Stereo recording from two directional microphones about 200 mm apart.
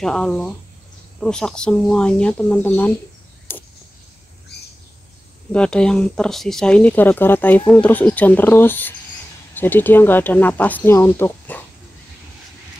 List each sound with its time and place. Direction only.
0.0 s speech: 5° left (ahead or behind)
3.5 s a sound: 10° left (ahead or behind)
4.5 s bird: 55° left (ahead or behind)
5.5 s speech: 5° left (ahead or behind)